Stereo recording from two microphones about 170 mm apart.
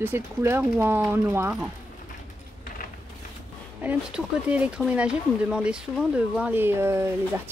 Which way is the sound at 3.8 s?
10° right (ahead or behind).